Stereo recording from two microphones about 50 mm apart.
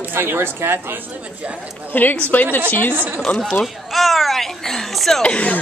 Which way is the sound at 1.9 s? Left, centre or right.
Left.